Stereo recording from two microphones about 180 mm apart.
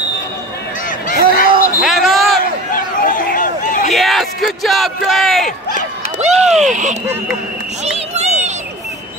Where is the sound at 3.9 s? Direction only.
Centre (ahead or behind).